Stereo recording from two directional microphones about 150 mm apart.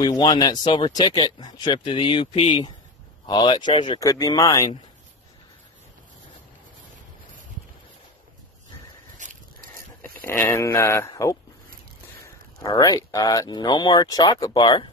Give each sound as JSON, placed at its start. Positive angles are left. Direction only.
{"t": 0.0, "sound": "speech", "side_deg": 25}
{"t": 4.0, "sound": "speech", "side_deg": 25}
{"t": 9.2, "sound": "a sound", "side_deg": -60}
{"t": 10.0, "sound": "speech", "side_deg": 15}
{"t": 12.6, "sound": "speech", "side_deg": 25}